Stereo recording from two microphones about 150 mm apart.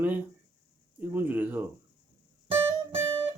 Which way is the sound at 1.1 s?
10° right (ahead or behind).